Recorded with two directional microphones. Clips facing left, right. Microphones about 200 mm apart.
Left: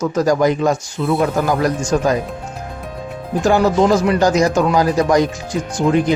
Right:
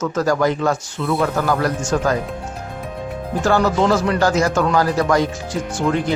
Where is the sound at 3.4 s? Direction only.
15° left (ahead or behind).